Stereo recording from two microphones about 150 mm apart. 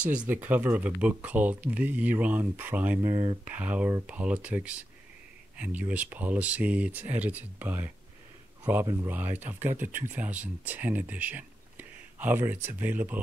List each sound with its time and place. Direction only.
0.2 s speech: 10° right (ahead or behind)
3.1 s speech: 25° right (ahead or behind)
3.4 s speech: 10° right (ahead or behind)
9.0 s speech: 10° right (ahead or behind)